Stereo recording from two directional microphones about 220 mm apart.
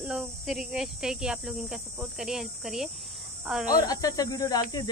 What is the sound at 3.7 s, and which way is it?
Speech, 15° left (ahead or behind).